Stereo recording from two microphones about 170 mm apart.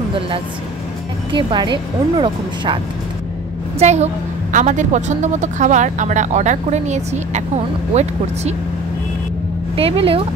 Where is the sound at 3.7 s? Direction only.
40° right (ahead or behind).